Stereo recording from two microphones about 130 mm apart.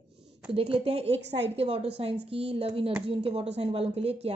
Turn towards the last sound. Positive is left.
turn(degrees=-50)  # may be behind; listen again after turning